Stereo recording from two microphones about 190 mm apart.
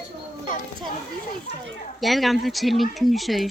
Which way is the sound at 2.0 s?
Centre (ahead or behind).